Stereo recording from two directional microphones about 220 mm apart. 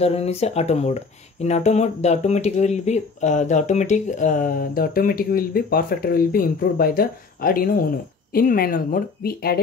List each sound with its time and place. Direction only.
0.0 s speech: 30° left (ahead or behind); by 9.6 s 45° left (ahead or behind)